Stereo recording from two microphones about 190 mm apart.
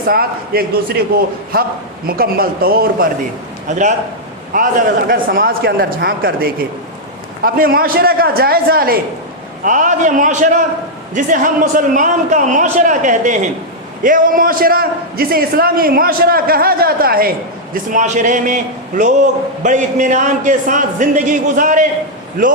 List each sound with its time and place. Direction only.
0.1 s a man's voice: 50° right (ahead or behind)
3.7 s a man's voice: 40° right (ahead or behind)
17.9 s a man's voice: 40° right (ahead or behind)